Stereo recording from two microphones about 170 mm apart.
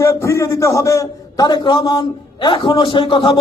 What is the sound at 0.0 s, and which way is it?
A man's voice, 15° left (ahead or behind).